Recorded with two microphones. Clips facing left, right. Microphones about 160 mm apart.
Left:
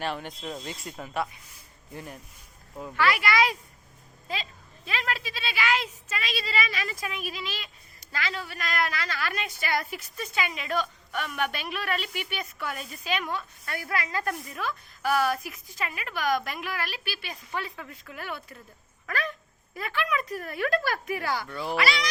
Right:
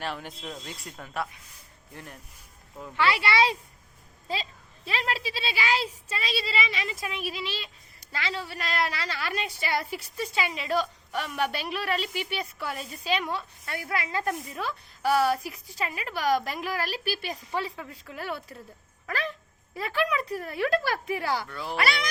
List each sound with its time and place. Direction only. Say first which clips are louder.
0.0 s speech: left 2 dB; centre (ahead or behind)
2.9 s a woman's voice: even; 30° right (ahead or behind)
17.5 s a woman's voice: right 1 dB; 25° right (ahead or behind)
21.5 s speech: left 3 dB; centre (ahead or behind)